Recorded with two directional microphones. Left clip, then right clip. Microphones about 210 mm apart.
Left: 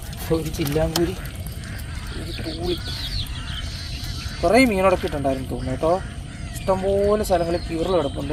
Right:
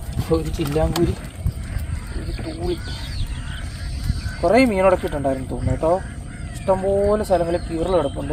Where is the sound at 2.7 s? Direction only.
50° right (ahead or behind).